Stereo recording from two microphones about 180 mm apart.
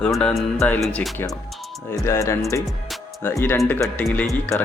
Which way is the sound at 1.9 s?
15° left (ahead or behind).